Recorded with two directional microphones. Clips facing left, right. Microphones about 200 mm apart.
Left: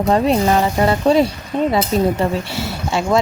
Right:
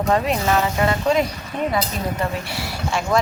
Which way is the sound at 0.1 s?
30° left (ahead or behind).